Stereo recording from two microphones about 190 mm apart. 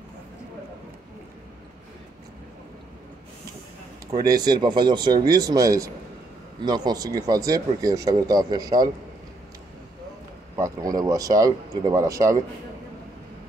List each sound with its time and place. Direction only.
4.1 s speech: 20° right (ahead or behind)
10.5 s speech: 20° right (ahead or behind)